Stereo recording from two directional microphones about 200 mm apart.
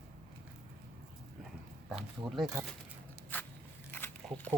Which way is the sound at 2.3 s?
Centre (ahead or behind).